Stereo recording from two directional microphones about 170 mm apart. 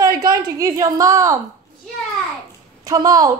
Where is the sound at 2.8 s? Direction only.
20° right (ahead or behind).